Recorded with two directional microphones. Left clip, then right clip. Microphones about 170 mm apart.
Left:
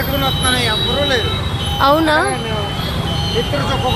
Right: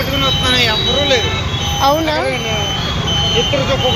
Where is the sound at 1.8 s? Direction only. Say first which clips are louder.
Left 2 dB; 30° left (ahead or behind).